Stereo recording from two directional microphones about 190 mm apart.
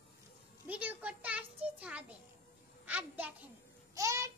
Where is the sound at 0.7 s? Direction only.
10° right (ahead or behind).